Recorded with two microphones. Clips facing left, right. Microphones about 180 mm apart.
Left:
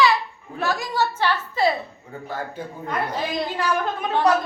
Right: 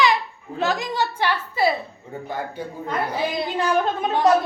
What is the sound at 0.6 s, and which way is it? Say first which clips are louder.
A woman's voice: right 1 dB; 20° right (ahead or behind).